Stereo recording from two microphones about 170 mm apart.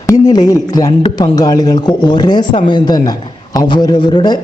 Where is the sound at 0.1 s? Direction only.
20° left (ahead or behind).